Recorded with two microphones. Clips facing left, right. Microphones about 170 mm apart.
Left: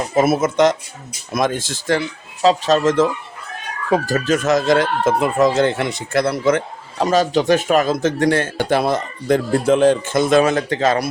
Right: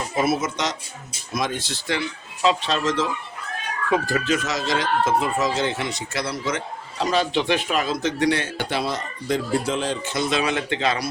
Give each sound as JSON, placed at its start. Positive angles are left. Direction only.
{"t": 0.2, "sound": "speech", "side_deg": 50}
{"t": 3.8, "sound": "speech", "side_deg": 35}